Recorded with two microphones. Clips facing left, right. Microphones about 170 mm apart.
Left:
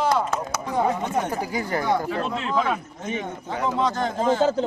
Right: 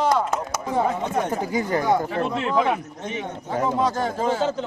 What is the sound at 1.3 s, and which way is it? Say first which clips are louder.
Speech: right 3 dB; 20° right (ahead or behind).